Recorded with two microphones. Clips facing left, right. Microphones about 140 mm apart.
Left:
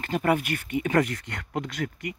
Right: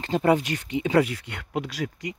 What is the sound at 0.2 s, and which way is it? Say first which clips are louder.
Speech: right 3 dB; 15° right (ahead or behind).